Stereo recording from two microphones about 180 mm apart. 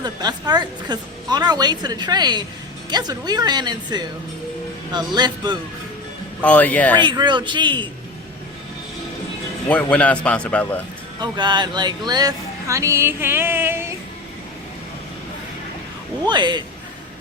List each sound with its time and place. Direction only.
0.0 s a woman's voice: 20° right (ahead or behind)
6.4 s a man's voice: 10° left (ahead or behind)
6.9 s a woman's voice: 25° right (ahead or behind)
9.6 s a man's voice: 5° left (ahead or behind)
11.2 s speech: 25° right (ahead or behind)
16.3 s a woman's voice: 25° right (ahead or behind)